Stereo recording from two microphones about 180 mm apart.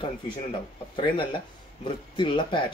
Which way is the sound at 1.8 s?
25° left (ahead or behind).